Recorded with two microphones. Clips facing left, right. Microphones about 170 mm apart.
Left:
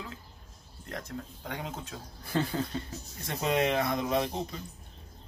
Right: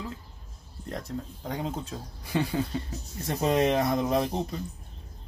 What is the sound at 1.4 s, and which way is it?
Speech, 30° right (ahead or behind).